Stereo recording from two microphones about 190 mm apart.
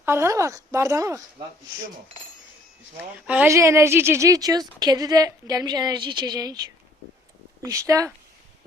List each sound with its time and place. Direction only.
0.0 s a woman's voice: 15° right (ahead or behind)
3.0 s a woman's voice: 10° right (ahead or behind)
7.6 s a woman's voice: 15° right (ahead or behind)